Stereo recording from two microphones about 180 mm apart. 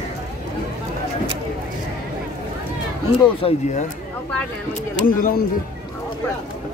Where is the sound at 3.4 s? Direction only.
40° left (ahead or behind).